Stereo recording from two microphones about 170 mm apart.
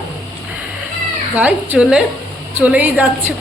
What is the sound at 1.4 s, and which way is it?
A woman's voice, 10° right (ahead or behind).